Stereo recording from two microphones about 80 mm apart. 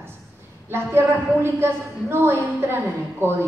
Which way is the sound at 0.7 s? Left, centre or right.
Right.